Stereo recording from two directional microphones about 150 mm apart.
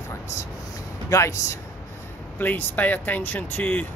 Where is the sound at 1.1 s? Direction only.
20° left (ahead or behind).